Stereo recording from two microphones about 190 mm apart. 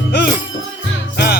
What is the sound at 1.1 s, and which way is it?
Music, 55° left (ahead or behind).